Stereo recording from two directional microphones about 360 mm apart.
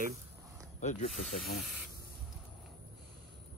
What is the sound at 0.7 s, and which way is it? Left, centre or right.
Speech, centre.